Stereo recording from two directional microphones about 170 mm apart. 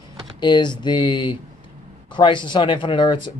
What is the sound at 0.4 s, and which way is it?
Speech, 25° left (ahead or behind).